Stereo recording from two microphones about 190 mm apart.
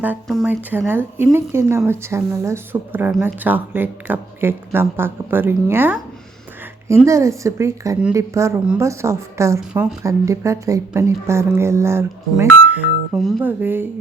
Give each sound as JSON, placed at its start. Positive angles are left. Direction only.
{"t": 0.4, "sound": "speech", "side_deg": -10}